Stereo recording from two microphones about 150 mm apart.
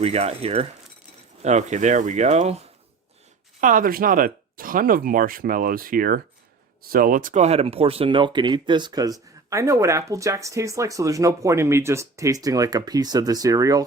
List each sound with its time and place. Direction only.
0.0 s speech: 45° right (ahead or behind)
3.6 s speech: 65° right (ahead or behind); by 13.8 s 25° right (ahead or behind)